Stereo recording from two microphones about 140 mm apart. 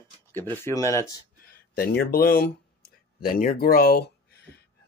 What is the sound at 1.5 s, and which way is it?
Speech, 90° left.